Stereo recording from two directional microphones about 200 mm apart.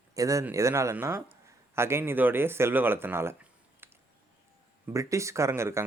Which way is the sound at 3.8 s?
10° right (ahead or behind).